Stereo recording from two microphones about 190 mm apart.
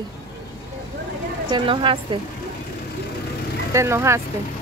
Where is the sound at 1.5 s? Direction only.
25° right (ahead or behind).